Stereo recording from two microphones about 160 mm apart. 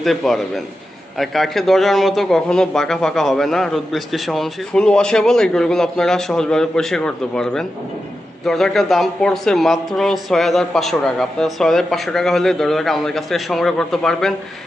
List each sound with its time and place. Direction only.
0.0 s speech: centre (ahead or behind)